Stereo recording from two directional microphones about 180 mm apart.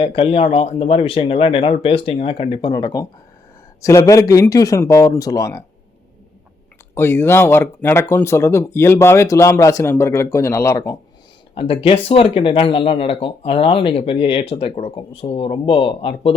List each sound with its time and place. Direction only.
0.0 s speech: 30° left (ahead or behind)
6.9 s speech: 15° left (ahead or behind)
11.5 s speech: 30° left (ahead or behind)